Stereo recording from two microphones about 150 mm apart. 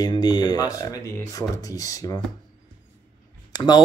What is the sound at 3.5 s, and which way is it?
Speech, 25° left (ahead or behind).